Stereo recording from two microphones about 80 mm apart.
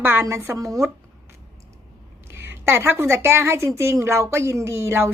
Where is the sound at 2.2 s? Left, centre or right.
Right.